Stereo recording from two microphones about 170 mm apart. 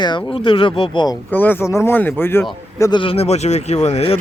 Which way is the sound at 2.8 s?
25° left (ahead or behind).